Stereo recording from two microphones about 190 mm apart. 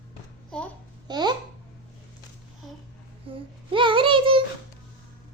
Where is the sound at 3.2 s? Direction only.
30° right (ahead or behind).